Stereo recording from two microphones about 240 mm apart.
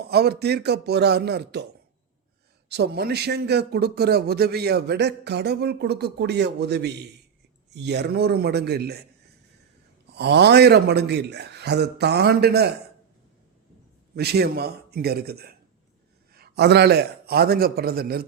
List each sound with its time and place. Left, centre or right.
0.0 s speech: right
2.6 s a man's voice: right
10.2 s speech: right
14.2 s a man's voice: right